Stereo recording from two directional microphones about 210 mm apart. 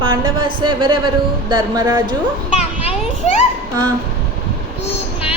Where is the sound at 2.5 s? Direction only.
30° left (ahead or behind).